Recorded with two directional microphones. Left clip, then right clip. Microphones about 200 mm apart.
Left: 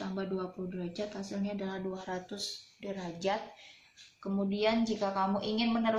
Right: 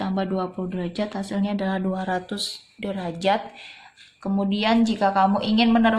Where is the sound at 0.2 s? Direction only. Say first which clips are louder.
Right 9 dB; 50° right (ahead or behind).